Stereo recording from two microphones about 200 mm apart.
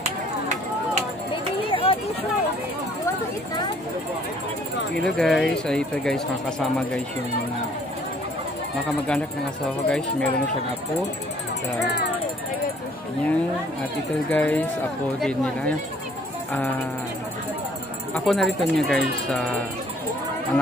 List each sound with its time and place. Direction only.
1.3 s a sound: 25° left (ahead or behind)
5.0 s speech: centre (ahead or behind)
9.7 s speech: 5° left (ahead or behind)
14.3 s speech: 10° left (ahead or behind)
18.2 s speech: centre (ahead or behind)